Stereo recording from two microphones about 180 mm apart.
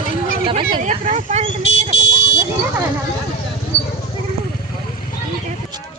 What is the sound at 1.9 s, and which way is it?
Car alarm, 75° left (ahead or behind).